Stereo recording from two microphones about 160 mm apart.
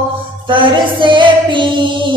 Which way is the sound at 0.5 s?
30° right (ahead or behind).